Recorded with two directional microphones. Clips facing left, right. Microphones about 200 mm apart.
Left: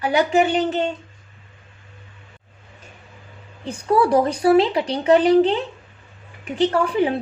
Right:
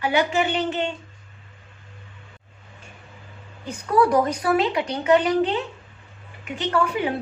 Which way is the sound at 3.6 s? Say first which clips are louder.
Left 2 dB; 30° left (ahead or behind).